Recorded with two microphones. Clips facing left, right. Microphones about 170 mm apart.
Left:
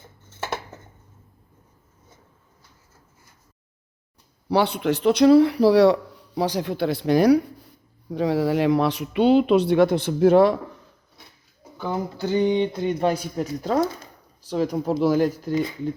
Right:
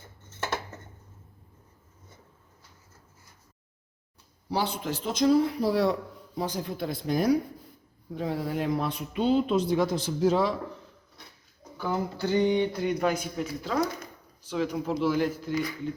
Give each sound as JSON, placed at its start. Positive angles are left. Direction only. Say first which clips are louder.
{"t": 4.4, "sound": "a man's voice", "louder": "left 9 dB", "side_deg": 70}
{"t": 11.8, "sound": "speech", "louder": "left 2 dB", "side_deg": 20}
{"t": 15.5, "sound": "speech", "louder": "left 5 dB", "side_deg": 25}